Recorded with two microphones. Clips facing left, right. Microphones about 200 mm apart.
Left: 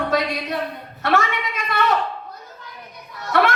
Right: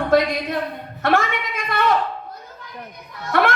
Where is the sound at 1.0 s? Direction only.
50° right (ahead or behind).